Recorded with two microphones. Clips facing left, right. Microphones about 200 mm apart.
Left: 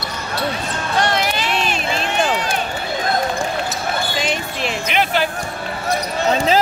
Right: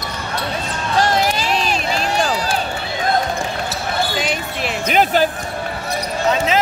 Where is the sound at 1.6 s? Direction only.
35° right (ahead or behind).